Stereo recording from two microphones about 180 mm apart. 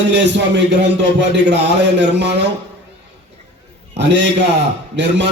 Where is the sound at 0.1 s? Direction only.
75° right (ahead or behind).